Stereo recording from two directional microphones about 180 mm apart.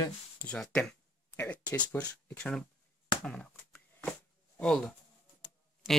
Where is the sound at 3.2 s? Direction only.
5° left (ahead or behind).